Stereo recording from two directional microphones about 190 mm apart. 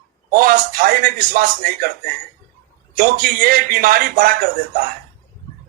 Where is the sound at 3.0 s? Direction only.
45° right (ahead or behind).